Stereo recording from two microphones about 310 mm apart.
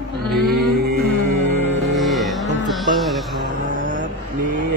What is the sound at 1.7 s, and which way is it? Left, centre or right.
Music, centre.